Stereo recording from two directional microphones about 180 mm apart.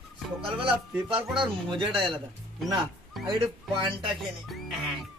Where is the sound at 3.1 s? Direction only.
Centre (ahead or behind).